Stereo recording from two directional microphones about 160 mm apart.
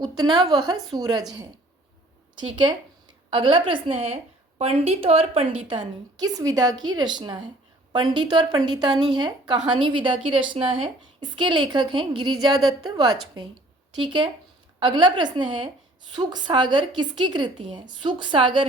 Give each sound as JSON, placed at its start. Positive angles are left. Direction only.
{"t": 0.2, "sound": "a woman's voice", "side_deg": -25}
{"t": 2.4, "sound": "a woman's voice", "side_deg": -30}